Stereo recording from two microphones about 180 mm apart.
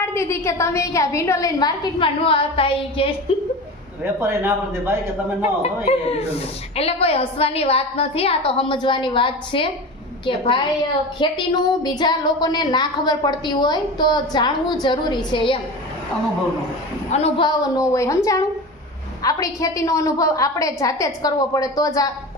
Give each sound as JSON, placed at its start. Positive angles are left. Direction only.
{"t": 0.0, "sound": "a woman's voice", "side_deg": 15}
{"t": 4.0, "sound": "speech", "side_deg": -15}
{"t": 5.4, "sound": "a woman's voice", "side_deg": 35}
{"t": 17.1, "sound": "a woman's voice", "side_deg": 35}
{"t": 19.2, "sound": "a woman's voice", "side_deg": 20}